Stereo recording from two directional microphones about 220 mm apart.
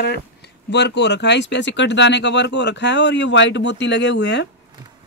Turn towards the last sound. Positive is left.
turn(degrees=55)  # may be behind; listen again after turning